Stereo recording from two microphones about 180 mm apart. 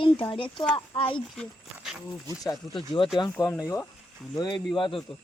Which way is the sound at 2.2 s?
20° left (ahead or behind).